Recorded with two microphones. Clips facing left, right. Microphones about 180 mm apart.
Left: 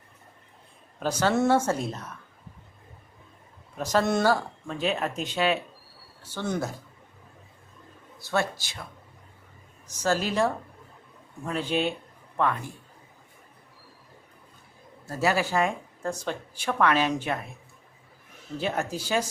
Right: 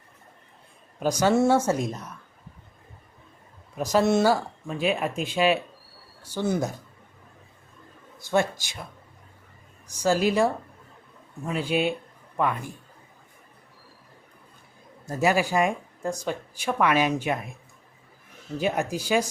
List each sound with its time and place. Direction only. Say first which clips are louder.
0.9 s speech: right 3 dB; 10° right (ahead or behind)
3.8 s speech: right 3 dB; 10° right (ahead or behind)
8.2 s speech: right 4 dB; 15° right (ahead or behind)
9.8 s speech: right 4 dB; 10° right (ahead or behind)
15.0 s speech: right 3 dB; 15° right (ahead or behind)
18.5 s speech: right 3 dB; 15° right (ahead or behind)